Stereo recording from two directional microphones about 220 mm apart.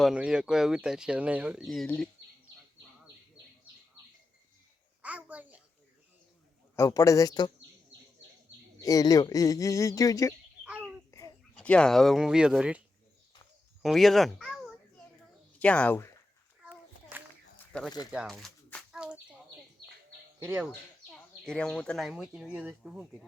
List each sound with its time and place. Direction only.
0.0 s speech: 5° right (ahead or behind)
5.0 s babbling: 5° right (ahead or behind)
6.7 s speech: 15° left (ahead or behind)
8.8 s speech: 15° left (ahead or behind)
10.7 s a sound: 5° right (ahead or behind)
11.1 s a sound: 15° left (ahead or behind)
11.5 s speech: 5° left (ahead or behind)
13.8 s a child's voice: centre (ahead or behind)
16.6 s a sound: 5° right (ahead or behind)
17.7 s a sound: 5° left (ahead or behind)
20.4 s speech: 10° right (ahead or behind)
21.1 s speech: 5° left (ahead or behind)